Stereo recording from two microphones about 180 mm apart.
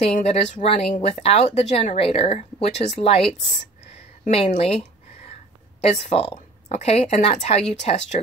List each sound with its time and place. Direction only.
0.0 s speech: 35° left (ahead or behind)